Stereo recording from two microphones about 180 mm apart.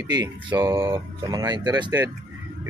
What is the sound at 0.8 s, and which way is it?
Speech, 25° right (ahead or behind).